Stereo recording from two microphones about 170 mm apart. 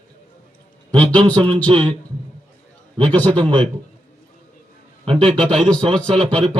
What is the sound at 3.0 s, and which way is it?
Speech, 10° left (ahead or behind).